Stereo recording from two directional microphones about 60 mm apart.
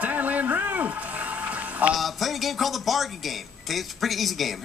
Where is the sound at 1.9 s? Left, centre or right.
Centre.